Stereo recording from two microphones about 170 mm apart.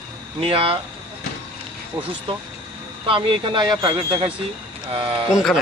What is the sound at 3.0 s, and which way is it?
Speech, 30° right (ahead or behind).